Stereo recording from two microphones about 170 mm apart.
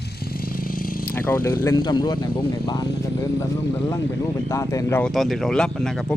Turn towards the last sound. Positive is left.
turn(degrees=5)  # may be behind; listen again after turning